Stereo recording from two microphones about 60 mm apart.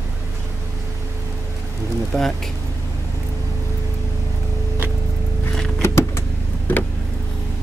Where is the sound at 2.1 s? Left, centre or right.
Centre.